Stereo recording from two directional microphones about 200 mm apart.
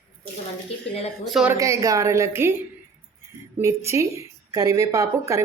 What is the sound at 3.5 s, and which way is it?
Speech, 15° right (ahead or behind).